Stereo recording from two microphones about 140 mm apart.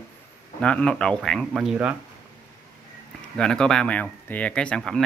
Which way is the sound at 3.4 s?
5° left (ahead or behind).